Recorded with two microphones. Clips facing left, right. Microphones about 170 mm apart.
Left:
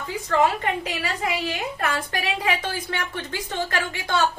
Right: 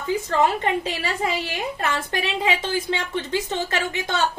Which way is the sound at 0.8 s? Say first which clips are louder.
Right 2 dB; 25° right (ahead or behind).